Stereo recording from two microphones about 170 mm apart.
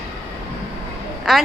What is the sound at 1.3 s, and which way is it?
Speech, centre (ahead or behind).